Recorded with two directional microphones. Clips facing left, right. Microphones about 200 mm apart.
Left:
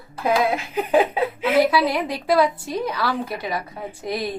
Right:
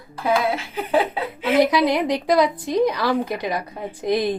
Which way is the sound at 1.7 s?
15° right (ahead or behind).